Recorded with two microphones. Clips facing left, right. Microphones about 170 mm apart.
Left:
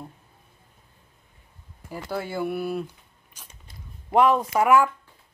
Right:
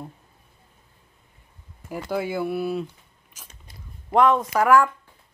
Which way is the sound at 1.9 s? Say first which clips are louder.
Right 4 dB; 10° right (ahead or behind).